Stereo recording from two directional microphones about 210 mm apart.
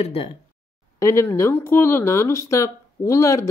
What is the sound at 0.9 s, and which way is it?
Speech, 15° left (ahead or behind).